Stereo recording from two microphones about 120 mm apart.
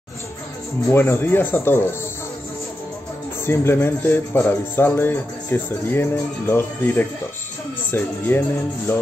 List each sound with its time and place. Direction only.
0.8 s speech: 20° left (ahead or behind)
3.4 s speech: 20° left (ahead or behind)